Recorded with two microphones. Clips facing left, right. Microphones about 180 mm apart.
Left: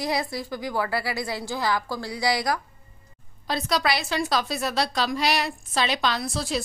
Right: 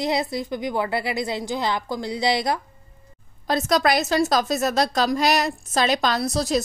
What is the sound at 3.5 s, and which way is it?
A woman's voice, 45° right (ahead or behind).